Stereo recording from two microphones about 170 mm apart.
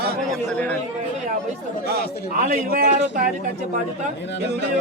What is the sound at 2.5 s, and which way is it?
Speech, 55° right (ahead or behind).